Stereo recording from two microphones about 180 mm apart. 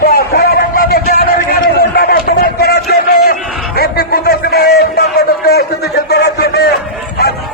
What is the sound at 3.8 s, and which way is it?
Music, 60° left (ahead or behind).